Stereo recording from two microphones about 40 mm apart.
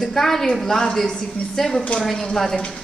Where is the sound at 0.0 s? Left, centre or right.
Centre.